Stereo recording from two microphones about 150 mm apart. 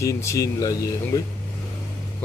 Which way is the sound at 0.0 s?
20° left (ahead or behind).